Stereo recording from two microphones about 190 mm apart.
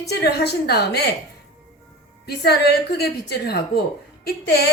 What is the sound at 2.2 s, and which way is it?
A woman's voice, 60° left (ahead or behind).